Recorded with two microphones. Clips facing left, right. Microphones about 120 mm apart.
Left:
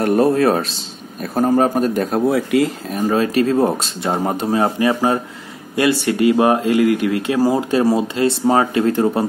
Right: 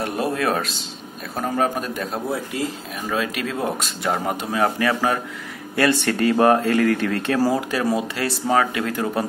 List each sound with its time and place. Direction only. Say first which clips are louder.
0.0 s speech: left 9 dB; 45° left (ahead or behind)
2.0 s speech: left 9 dB; 55° left (ahead or behind)
2.3 s speech: left 10 dB; 70° left (ahead or behind)
2.9 s speech: left 8 dB; 40° left (ahead or behind); by 5.2 s 25° left (ahead or behind)
5.8 s speech: left 3 dB; 15° left (ahead or behind)